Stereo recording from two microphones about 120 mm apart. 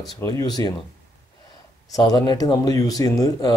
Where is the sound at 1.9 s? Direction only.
35° left (ahead or behind).